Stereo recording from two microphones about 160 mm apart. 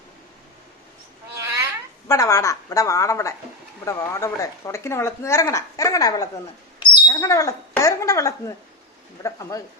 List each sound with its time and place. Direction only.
2.0 s a woman's voice: 20° left (ahead or behind)
6.7 s a sound: 20° left (ahead or behind)
7.7 s a woman's voice: 20° left (ahead or behind)